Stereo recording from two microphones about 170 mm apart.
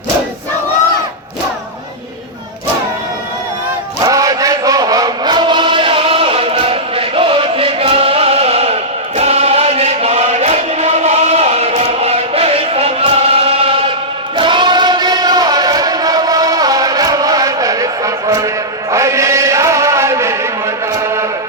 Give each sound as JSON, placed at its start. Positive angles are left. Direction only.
{"t": 4.0, "sound": "chant", "side_deg": -20}